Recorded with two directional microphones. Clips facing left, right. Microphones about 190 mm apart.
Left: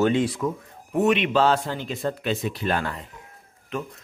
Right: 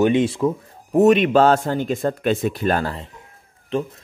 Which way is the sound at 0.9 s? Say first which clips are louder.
Right 7 dB; 40° right (ahead or behind).